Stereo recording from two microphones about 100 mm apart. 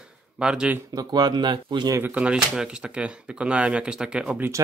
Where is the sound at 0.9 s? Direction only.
40° right (ahead or behind).